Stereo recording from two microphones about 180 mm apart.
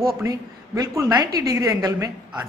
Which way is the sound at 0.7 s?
20° right (ahead or behind).